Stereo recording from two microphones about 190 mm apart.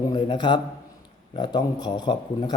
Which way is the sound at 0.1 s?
25° left (ahead or behind).